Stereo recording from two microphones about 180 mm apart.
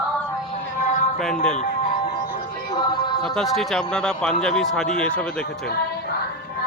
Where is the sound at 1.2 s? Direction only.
5° left (ahead or behind).